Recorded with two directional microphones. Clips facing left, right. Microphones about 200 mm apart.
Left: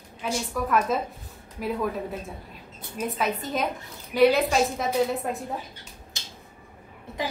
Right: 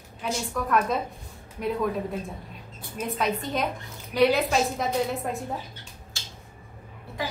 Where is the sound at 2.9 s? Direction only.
Centre (ahead or behind).